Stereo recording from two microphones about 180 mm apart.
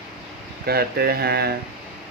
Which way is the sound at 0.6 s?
60° right (ahead or behind).